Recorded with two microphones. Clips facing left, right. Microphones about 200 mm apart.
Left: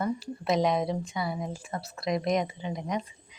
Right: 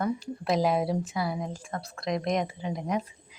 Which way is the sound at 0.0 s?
Centre (ahead or behind).